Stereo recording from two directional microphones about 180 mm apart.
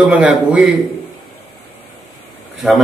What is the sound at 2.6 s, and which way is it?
Speech, 5° right (ahead or behind).